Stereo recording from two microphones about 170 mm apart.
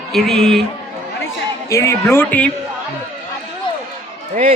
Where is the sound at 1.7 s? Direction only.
15° left (ahead or behind).